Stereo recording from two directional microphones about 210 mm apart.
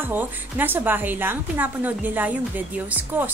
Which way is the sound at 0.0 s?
10° right (ahead or behind).